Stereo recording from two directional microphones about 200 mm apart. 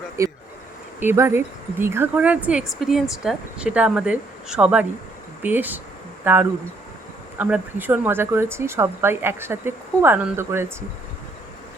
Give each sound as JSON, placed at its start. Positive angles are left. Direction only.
{"t": 0.2, "sound": "speech", "side_deg": -15}